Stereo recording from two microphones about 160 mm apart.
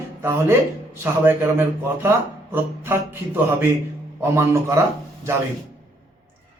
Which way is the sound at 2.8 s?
15° right (ahead or behind).